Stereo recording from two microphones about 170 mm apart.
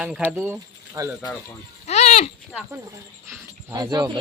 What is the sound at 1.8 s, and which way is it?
Goat, 40° left (ahead or behind).